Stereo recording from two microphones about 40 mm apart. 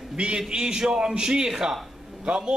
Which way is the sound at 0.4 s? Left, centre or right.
Right.